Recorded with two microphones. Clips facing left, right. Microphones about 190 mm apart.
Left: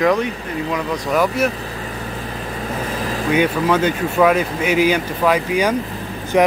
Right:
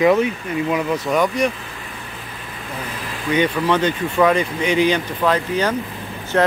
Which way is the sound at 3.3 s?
5° left (ahead or behind).